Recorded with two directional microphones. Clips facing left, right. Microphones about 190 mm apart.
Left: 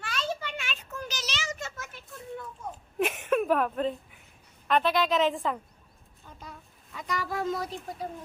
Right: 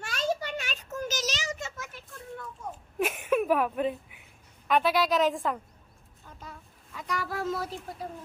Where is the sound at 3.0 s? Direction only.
Centre (ahead or behind).